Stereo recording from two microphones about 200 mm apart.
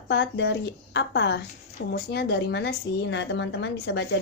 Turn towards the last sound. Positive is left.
turn(degrees=60)  # may be behind; listen again after turning